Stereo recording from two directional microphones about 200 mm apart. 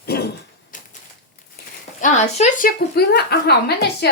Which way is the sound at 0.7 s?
40° left (ahead or behind).